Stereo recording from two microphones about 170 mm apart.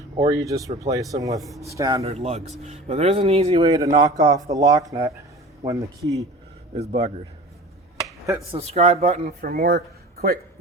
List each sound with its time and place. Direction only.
0.3 s speech: 20° right (ahead or behind)
1.4 s speech: centre (ahead or behind)
1.7 s speech: 20° right (ahead or behind)
2.0 s speech: 40° right (ahead or behind)
3.9 s speech: 25° right (ahead or behind)
6.7 s speech: 35° right (ahead or behind)
8.5 s speech: 40° right (ahead or behind)
9.4 s speech: 60° right (ahead or behind)